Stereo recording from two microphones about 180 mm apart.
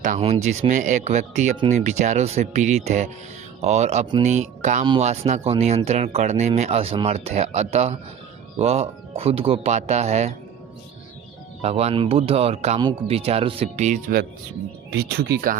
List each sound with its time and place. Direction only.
0.0 s speech: 40° right (ahead or behind)
11.6 s speech: 35° right (ahead or behind)
14.8 s speech: 65° right (ahead or behind)